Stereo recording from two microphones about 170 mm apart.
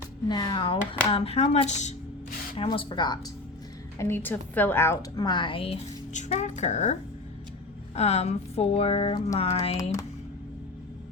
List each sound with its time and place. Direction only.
0.3 s speech: 25° left (ahead or behind); by 2.0 s 45° left (ahead or behind)
2.6 s a woman's voice: 30° left (ahead or behind)
3.9 s a woman's voice: 15° left (ahead or behind); by 6.9 s 45° left (ahead or behind)
7.9 s speech: 40° left (ahead or behind)